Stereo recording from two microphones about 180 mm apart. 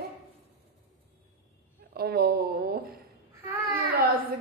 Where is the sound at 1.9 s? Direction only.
60° right (ahead or behind).